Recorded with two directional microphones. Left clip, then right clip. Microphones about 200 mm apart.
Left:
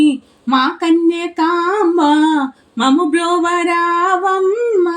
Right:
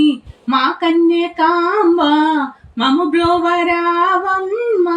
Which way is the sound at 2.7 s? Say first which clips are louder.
Left 1 dB; 50° left (ahead or behind).